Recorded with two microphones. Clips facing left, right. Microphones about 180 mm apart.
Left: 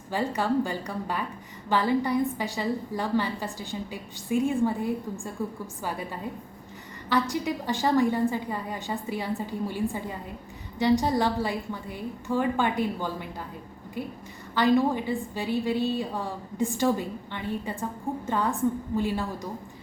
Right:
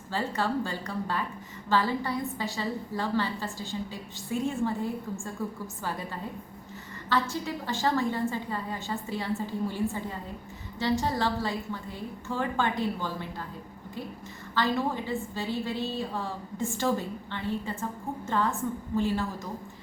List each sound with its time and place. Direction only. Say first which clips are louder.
0.1 s a woman's voice: left 3 dB; 15° left (ahead or behind)
7.1 s a woman's voice: left 3 dB; 15° left (ahead or behind)
14.5 s a woman's voice: left 6 dB; 15° left (ahead or behind)
18.9 s a woman's voice: even; 15° left (ahead or behind)